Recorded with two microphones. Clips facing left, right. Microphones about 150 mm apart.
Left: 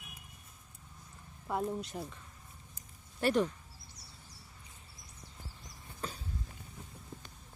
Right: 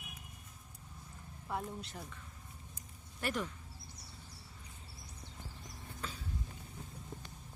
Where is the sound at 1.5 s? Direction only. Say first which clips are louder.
Left 6 dB; 20° left (ahead or behind).